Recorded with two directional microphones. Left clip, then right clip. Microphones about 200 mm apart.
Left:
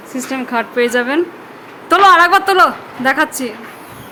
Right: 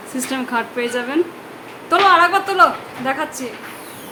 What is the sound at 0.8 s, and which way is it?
A woman's voice, 35° left (ahead or behind).